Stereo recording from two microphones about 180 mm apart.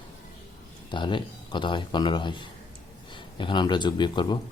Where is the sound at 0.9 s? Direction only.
25° left (ahead or behind).